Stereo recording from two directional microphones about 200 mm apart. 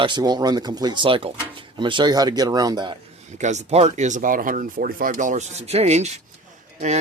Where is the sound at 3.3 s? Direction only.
35° right (ahead or behind).